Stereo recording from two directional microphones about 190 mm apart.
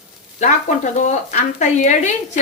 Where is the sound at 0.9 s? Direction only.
40° left (ahead or behind).